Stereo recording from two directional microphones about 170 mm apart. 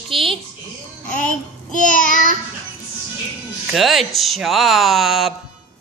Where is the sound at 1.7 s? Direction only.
50° left (ahead or behind).